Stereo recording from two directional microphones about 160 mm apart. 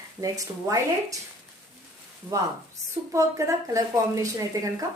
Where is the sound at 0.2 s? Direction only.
20° right (ahead or behind).